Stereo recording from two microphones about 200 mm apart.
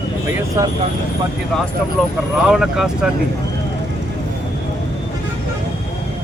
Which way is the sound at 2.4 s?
Centre (ahead or behind).